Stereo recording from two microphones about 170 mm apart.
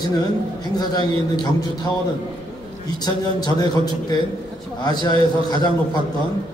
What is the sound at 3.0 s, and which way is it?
A man's voice, 25° left (ahead or behind).